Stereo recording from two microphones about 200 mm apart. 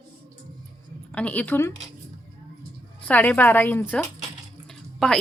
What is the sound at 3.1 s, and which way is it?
A woman's voice, 10° left (ahead or behind).